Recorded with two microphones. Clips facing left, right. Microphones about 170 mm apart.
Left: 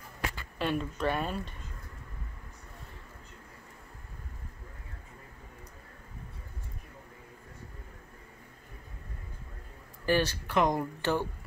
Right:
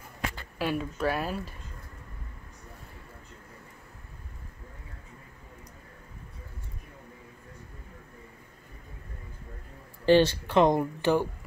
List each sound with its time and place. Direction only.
0.6 s speech: 5° right (ahead or behind)
10.0 s speech: 25° right (ahead or behind)
11.0 s speech: 15° right (ahead or behind)